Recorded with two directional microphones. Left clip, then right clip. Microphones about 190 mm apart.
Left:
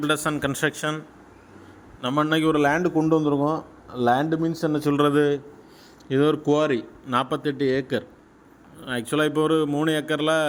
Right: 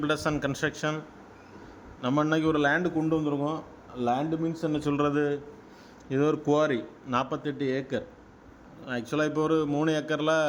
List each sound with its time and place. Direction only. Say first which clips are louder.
0.0 s speech: left 4 dB; centre (ahead or behind)
0.5 s a man's voice: left 4 dB; 10° left (ahead or behind)
2.0 s a man's voice: left 4 dB; centre (ahead or behind)